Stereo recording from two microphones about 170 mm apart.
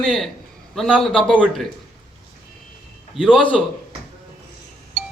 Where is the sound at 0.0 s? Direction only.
Centre (ahead or behind).